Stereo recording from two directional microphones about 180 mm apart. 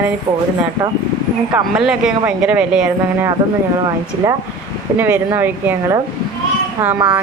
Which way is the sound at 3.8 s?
20° right (ahead or behind).